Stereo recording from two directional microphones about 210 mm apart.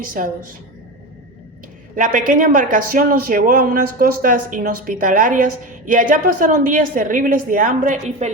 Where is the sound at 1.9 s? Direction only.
40° right (ahead or behind).